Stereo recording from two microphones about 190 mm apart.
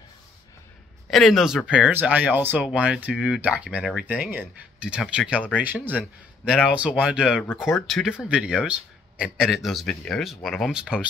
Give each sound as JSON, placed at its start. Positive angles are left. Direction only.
{"t": 1.1, "sound": "speech", "side_deg": 0}